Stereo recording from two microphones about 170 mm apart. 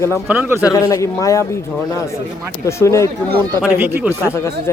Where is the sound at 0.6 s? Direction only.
20° left (ahead or behind).